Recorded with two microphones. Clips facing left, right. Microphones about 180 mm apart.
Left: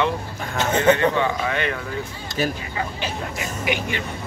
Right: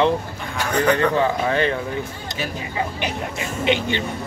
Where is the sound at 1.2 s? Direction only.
35° right (ahead or behind).